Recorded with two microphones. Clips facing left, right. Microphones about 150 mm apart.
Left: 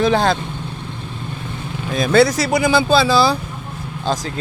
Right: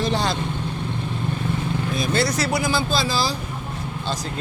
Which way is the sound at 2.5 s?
65° left (ahead or behind).